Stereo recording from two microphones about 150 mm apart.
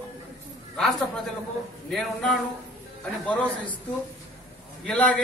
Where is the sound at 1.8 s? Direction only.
5° left (ahead or behind).